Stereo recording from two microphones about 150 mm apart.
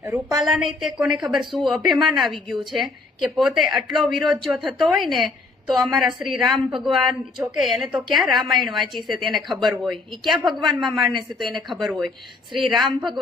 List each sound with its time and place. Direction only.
0.0 s a woman's voice: 10° right (ahead or behind)
11.3 s a woman's voice: centre (ahead or behind)